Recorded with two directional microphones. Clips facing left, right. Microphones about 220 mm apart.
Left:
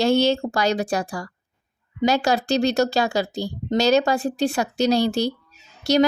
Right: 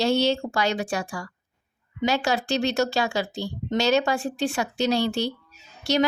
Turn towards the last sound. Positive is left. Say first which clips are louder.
# left 5 dB
turn(degrees=40)  # may be behind; listen again after turning